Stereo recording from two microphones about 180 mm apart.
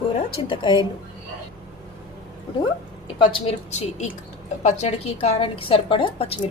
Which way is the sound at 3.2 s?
30° left (ahead or behind).